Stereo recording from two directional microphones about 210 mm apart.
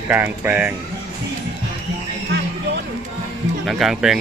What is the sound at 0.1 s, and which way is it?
Speech, 10° right (ahead or behind).